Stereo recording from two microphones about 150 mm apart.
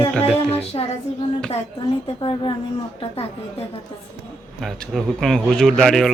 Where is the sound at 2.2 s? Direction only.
35° left (ahead or behind).